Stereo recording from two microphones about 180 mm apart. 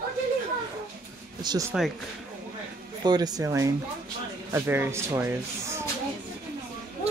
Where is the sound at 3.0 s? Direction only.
20° right (ahead or behind).